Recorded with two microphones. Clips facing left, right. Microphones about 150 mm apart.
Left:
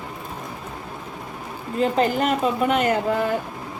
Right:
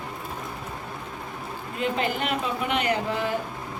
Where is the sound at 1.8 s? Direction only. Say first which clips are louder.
Left 7 dB; 40° left (ahead or behind).